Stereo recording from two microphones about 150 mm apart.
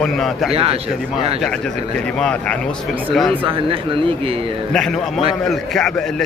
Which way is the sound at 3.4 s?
35° right (ahead or behind).